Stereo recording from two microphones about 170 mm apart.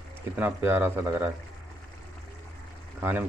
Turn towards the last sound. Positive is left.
turn(degrees=-10)  # may be behind; listen again after turning